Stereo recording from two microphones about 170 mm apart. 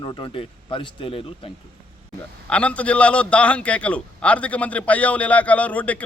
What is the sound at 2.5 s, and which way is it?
A man's voice, 5° left (ahead or behind).